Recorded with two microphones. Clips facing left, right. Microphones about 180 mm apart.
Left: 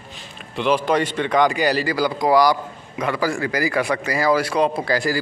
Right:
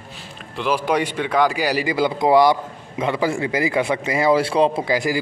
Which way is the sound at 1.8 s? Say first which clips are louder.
Right 1 dB; 25° right (ahead or behind).